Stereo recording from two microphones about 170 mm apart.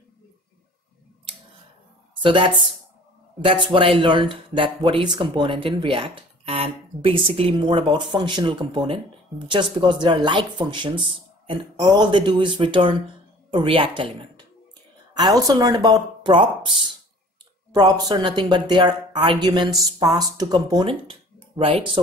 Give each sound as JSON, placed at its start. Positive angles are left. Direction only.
{"t": 2.2, "sound": "speech", "side_deg": -30}
{"t": 3.7, "sound": "speech", "side_deg": -30}